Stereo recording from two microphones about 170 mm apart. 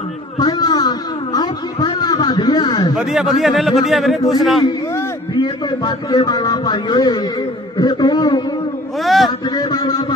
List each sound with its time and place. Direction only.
0.4 s a sound: 25° left (ahead or behind)
3.0 s a man's voice: centre (ahead or behind)
4.9 s a man's voice: 25° left (ahead or behind)
9.0 s a man's voice: centre (ahead or behind)
9.6 s a man's voice: 25° left (ahead or behind)